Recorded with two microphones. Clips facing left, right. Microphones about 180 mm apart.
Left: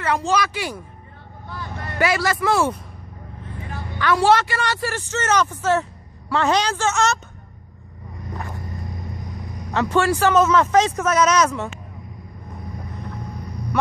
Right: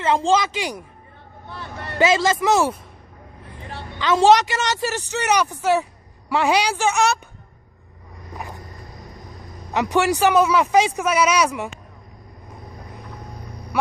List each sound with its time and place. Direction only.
0.0 s speech: 25° right (ahead or behind)
3.7 s a woman's voice: 20° right (ahead or behind)
9.7 s a woman's voice: 15° right (ahead or behind)